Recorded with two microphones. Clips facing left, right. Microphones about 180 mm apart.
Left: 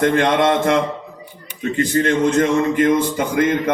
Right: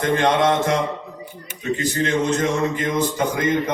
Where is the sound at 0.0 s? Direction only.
55° left (ahead or behind).